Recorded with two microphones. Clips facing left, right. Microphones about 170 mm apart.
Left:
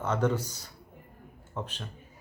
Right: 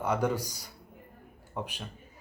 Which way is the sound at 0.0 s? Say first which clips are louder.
Left 1 dB; 10° right (ahead or behind).